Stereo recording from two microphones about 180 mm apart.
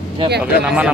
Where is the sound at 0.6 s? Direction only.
5° right (ahead or behind).